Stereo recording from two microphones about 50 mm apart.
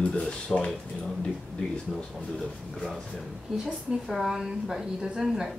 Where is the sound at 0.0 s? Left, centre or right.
Left.